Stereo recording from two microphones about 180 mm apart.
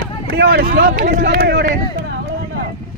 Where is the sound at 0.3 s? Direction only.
60° right (ahead or behind).